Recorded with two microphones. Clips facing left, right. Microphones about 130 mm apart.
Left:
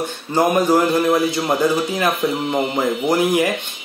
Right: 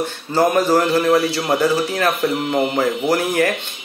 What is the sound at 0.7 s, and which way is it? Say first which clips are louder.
Speech: even; 15° left (ahead or behind).